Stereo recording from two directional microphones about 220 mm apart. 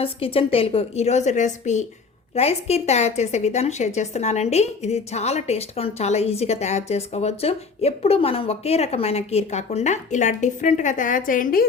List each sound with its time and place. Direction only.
0.0 s a woman's voice: 25° left (ahead or behind)